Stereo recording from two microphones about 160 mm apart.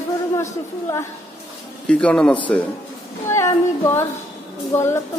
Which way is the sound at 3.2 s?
20° left (ahead or behind).